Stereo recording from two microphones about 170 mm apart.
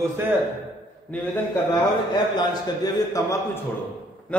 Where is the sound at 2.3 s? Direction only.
20° left (ahead or behind).